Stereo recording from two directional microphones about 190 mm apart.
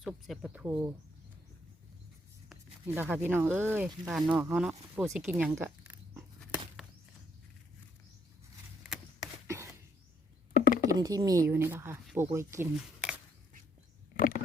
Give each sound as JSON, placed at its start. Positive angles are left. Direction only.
{"t": 0.0, "sound": "a woman's voice", "side_deg": 0}
{"t": 2.8, "sound": "a woman's voice", "side_deg": -10}
{"t": 10.5, "sound": "chopping", "side_deg": 45}
{"t": 10.8, "sound": "a woman's voice", "side_deg": -20}
{"t": 12.7, "sound": "a sound", "side_deg": -5}
{"t": 14.2, "sound": "a sound", "side_deg": 45}